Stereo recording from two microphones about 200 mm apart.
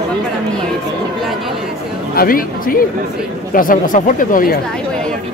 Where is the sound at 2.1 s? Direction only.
45° left (ahead or behind).